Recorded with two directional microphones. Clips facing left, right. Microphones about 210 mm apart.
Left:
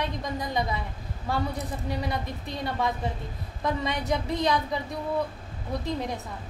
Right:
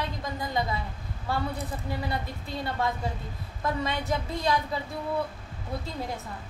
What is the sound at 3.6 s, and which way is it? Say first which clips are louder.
Speech: left 1 dB; 20° left (ahead or behind).